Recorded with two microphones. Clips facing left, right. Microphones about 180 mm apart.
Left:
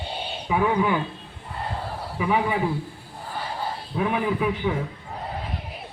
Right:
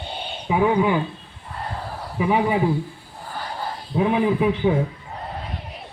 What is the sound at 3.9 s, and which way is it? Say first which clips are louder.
Speech: right 5 dB; 25° right (ahead or behind).